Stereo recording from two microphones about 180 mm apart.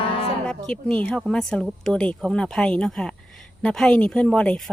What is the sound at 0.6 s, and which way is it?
Speech, 5° left (ahead or behind).